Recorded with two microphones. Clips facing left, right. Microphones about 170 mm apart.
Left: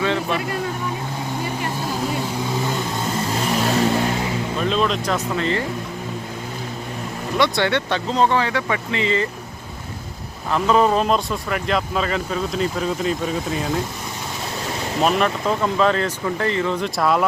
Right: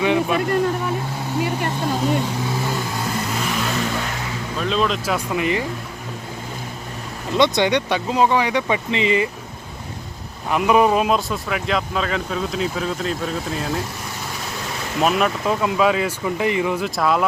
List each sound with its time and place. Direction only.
0.0 s a sound: 15° right (ahead or behind)
3.5 s vehicle: 35° left (ahead or behind)
4.6 s speech: centre (ahead or behind)
7.3 s speech: 20° right (ahead or behind)
10.5 s speech: 15° right (ahead or behind)
15.0 s speech: 5° right (ahead or behind)